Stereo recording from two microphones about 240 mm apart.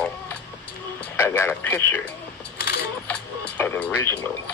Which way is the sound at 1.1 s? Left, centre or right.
Centre.